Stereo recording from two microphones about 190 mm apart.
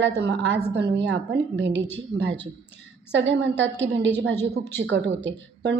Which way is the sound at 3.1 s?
70° right (ahead or behind).